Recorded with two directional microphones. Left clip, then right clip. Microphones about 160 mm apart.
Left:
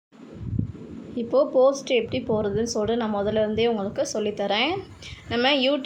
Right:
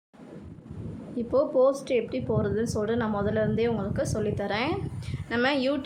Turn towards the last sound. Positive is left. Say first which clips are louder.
# left 4 dB
turn(degrees=0)  # may be behind; listen again after turning